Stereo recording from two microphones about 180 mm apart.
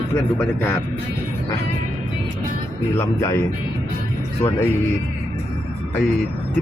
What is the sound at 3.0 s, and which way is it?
Speech, 15° left (ahead or behind).